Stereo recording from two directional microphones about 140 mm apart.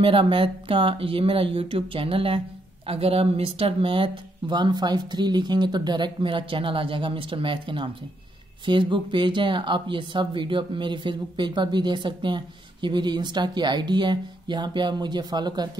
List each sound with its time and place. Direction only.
0.0 s speech: 40° right (ahead or behind)